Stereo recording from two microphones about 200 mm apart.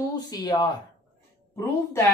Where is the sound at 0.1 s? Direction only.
20° left (ahead or behind).